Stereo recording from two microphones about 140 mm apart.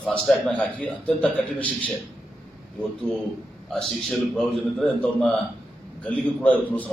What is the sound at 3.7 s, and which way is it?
A man's voice, 5° left (ahead or behind).